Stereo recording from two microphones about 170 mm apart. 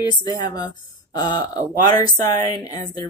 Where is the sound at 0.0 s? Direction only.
25° left (ahead or behind).